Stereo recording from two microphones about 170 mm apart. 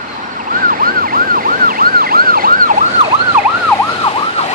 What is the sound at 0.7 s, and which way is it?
Emergency vehicle, 60° right (ahead or behind).